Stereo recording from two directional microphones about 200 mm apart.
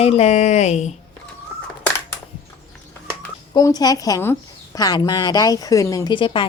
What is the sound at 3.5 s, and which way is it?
Speech, 20° left (ahead or behind).